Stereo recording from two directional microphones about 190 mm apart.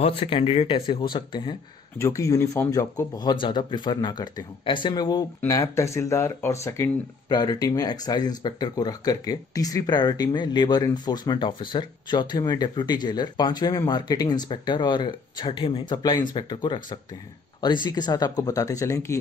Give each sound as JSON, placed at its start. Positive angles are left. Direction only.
{"t": 0.0, "sound": "speech", "side_deg": 30}